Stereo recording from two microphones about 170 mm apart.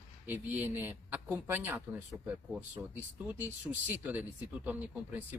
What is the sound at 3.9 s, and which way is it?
Speech, 10° right (ahead or behind).